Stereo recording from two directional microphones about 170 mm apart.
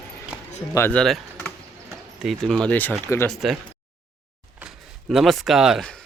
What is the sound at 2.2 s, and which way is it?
Speech, centre (ahead or behind).